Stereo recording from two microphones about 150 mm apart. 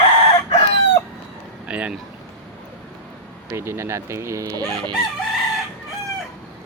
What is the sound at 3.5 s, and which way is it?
Speech, 15° right (ahead or behind).